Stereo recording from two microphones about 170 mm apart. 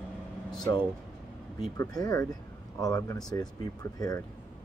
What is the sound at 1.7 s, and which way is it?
Speech, 20° left (ahead or behind).